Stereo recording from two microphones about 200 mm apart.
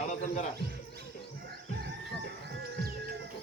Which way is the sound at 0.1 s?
35° left (ahead or behind).